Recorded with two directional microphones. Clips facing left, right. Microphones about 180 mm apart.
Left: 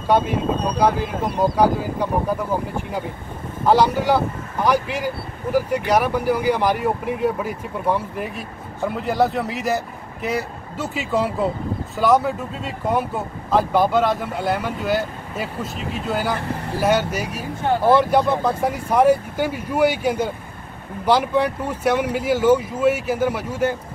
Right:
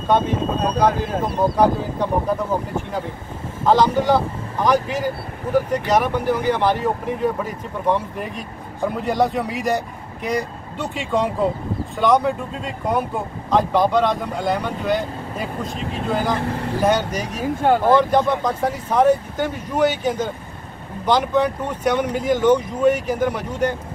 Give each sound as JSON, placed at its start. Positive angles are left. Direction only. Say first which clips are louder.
{"t": 0.1, "sound": "speech", "louder": "even", "side_deg": 10}
{"t": 3.6, "sound": "speech", "louder": "right 1 dB", "side_deg": 10}